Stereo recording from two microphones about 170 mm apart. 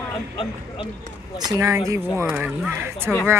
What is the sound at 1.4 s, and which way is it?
Speech, 20° right (ahead or behind).